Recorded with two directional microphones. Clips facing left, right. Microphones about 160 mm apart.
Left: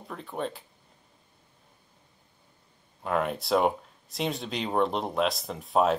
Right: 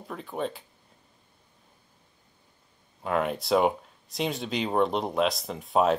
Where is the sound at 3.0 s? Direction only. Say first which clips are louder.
Right 1 dB; centre (ahead or behind).